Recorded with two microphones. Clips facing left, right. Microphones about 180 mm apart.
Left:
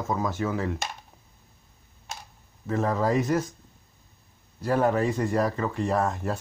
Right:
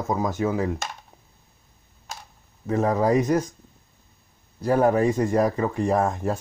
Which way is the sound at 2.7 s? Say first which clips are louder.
Right 4 dB; 40° right (ahead or behind).